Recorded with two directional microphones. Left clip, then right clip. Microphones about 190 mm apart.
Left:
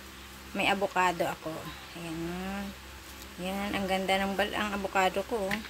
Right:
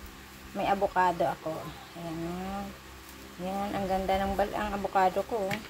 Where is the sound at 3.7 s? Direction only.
20° left (ahead or behind).